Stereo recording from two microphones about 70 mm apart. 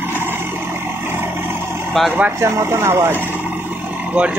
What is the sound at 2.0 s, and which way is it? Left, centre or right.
Speech, centre.